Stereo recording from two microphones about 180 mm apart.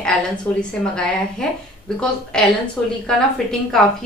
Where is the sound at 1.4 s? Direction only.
5° left (ahead or behind).